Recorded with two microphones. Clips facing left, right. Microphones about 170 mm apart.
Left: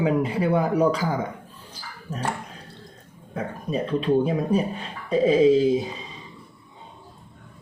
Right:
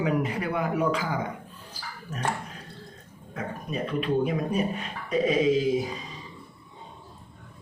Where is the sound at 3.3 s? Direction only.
30° left (ahead or behind).